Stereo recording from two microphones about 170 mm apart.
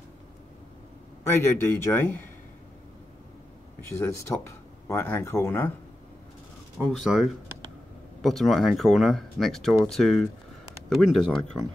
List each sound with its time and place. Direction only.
1.3 s speech: 15° left (ahead or behind)
3.9 s speech: 15° left (ahead or behind)
6.8 s speech: centre (ahead or behind)